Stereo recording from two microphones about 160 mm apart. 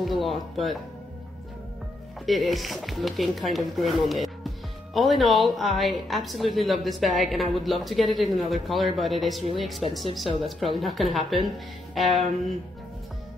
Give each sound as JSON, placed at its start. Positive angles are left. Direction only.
{"t": 0.0, "sound": "a woman's voice", "side_deg": 0}
{"t": 2.2, "sound": "a woman's voice", "side_deg": 0}